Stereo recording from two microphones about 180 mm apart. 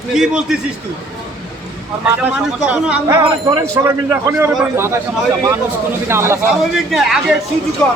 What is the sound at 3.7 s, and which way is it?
A man's voice, 15° right (ahead or behind).